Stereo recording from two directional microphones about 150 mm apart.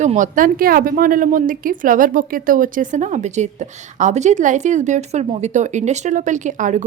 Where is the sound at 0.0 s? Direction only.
55° right (ahead or behind).